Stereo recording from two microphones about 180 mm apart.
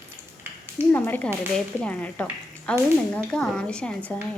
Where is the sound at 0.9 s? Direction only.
10° left (ahead or behind).